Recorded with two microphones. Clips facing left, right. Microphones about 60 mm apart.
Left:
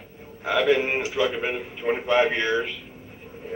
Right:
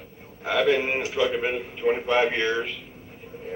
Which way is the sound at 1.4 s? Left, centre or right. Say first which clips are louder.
Right 2 dB; centre.